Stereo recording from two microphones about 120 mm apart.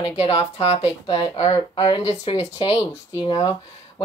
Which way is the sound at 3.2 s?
35° left (ahead or behind).